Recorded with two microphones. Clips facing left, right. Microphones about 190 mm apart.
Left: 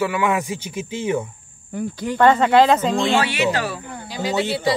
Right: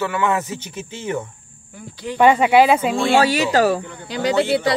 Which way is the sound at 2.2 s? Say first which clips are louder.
Right 1 dB; 10° right (ahead or behind).